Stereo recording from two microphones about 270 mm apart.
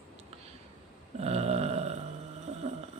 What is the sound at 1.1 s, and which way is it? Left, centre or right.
Burping, right.